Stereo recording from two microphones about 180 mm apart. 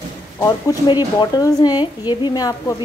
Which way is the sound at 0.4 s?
15° left (ahead or behind).